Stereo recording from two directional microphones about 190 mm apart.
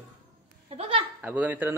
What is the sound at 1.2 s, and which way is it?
Speech, 10° right (ahead or behind).